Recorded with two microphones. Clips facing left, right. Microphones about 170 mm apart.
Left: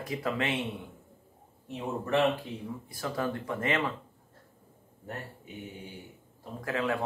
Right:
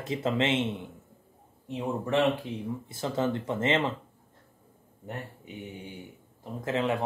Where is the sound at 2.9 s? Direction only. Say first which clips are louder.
Right 4 dB; 25° right (ahead or behind).